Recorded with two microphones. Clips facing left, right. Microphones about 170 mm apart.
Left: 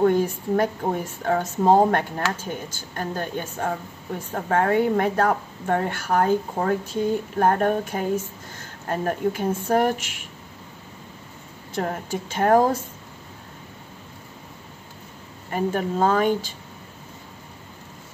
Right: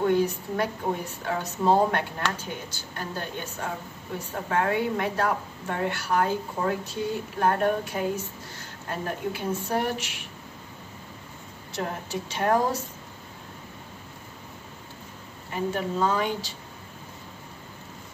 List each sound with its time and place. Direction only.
0.0 s a woman's voice: 50° left (ahead or behind)
11.7 s a woman's voice: 50° left (ahead or behind)
15.5 s a woman's voice: 50° left (ahead or behind)